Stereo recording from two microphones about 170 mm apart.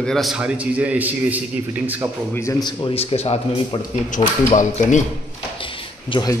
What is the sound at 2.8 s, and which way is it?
Speech, 35° left (ahead or behind).